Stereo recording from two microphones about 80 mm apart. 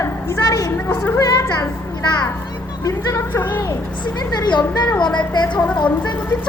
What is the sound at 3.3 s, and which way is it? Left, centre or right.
Speech, left.